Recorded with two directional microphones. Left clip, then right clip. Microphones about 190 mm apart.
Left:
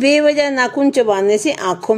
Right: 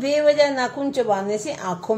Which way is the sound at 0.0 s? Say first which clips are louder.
Left 4 dB; 45° left (ahead or behind).